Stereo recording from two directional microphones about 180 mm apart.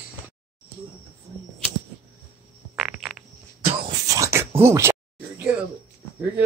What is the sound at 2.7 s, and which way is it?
Insect, 5° right (ahead or behind).